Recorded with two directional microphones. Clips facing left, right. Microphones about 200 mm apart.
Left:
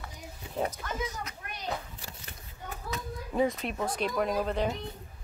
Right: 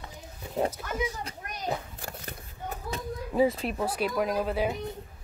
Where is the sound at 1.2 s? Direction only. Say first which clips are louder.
Right 3 dB; 45° right (ahead or behind).